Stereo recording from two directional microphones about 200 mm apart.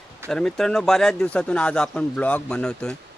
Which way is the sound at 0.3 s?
5° left (ahead or behind).